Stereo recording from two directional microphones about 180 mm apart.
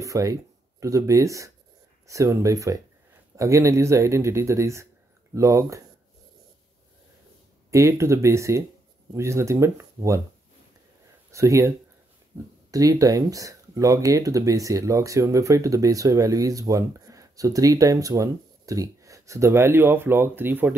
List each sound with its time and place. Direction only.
0.0 s speech: 20° right (ahead or behind)
7.7 s speech: 15° right (ahead or behind)
11.3 s speech: 15° right (ahead or behind)
12.7 s speech: 20° right (ahead or behind)